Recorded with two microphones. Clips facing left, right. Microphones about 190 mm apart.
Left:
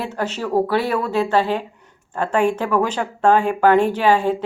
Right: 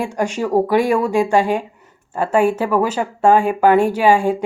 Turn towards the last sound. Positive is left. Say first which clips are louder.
# right 2 dB
turn(degrees=-10)  # may be behind; listen again after turning